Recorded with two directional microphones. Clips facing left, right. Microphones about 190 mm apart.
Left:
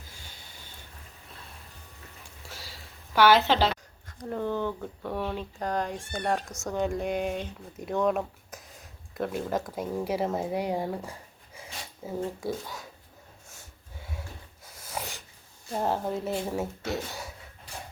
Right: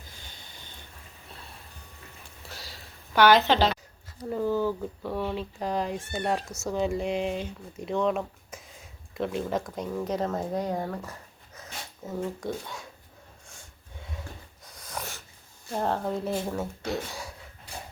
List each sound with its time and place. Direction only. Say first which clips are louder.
3.1 s speech: right 1 dB; 5° left (ahead or behind)
4.2 s speech: right 3 dB; 5° right (ahead or behind)
13.5 s snort: even; 5° left (ahead or behind)
15.7 s speech: even; 5° left (ahead or behind)